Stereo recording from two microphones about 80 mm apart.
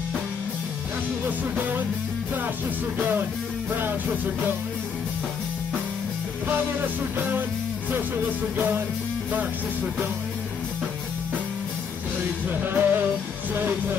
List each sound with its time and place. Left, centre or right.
3.7 s music: right
6.4 s music: right
8.5 s music: right
12.4 s music: right